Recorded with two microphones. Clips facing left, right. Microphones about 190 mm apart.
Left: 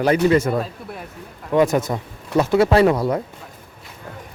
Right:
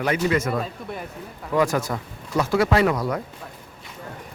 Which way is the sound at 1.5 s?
20° left (ahead or behind).